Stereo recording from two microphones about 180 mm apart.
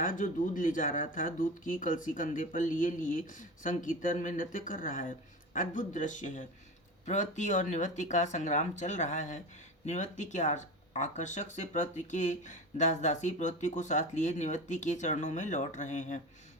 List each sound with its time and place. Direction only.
0.0 s speech: 45° left (ahead or behind)